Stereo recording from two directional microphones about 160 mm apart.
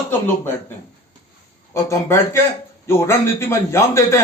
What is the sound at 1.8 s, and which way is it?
A man's voice, 15° left (ahead or behind).